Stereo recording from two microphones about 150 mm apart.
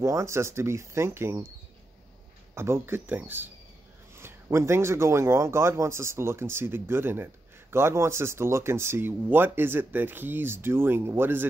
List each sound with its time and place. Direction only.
0.0 s speech: 20° right (ahead or behind)
2.5 s speech: 15° right (ahead or behind)